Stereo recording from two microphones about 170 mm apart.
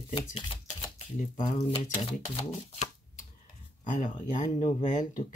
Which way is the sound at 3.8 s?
45° left (ahead or behind).